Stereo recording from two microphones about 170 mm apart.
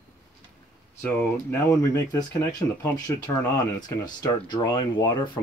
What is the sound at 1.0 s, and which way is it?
Speech, 10° left (ahead or behind).